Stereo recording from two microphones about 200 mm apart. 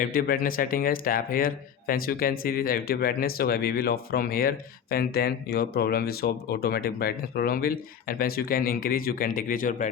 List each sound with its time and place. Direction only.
0.0 s speech: 45° left (ahead or behind)